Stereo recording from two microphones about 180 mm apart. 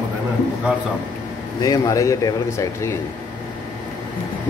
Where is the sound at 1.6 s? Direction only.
20° left (ahead or behind).